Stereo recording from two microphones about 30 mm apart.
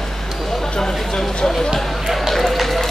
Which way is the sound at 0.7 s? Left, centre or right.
Centre.